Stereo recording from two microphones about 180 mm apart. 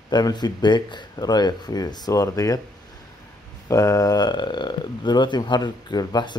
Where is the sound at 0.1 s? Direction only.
25° left (ahead or behind).